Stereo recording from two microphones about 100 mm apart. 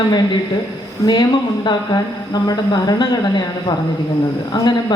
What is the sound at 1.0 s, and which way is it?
Speech, 45° left (ahead or behind).